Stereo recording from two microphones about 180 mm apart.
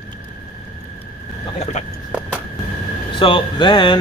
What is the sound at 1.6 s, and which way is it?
Horse, 40° left (ahead or behind).